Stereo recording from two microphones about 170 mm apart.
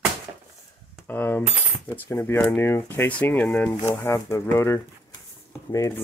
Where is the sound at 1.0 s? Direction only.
10° left (ahead or behind).